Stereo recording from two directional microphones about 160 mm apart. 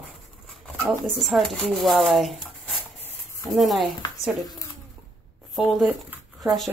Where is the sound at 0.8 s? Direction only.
10° right (ahead or behind).